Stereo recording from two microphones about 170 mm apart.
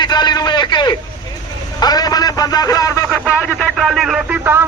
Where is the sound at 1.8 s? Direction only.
25° left (ahead or behind); by 4.7 s 15° right (ahead or behind).